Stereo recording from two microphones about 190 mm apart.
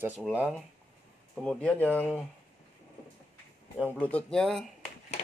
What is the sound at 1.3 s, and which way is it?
Speech, 5° left (ahead or behind).